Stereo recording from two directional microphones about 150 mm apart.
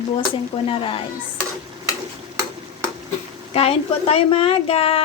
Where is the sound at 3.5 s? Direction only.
40° left (ahead or behind).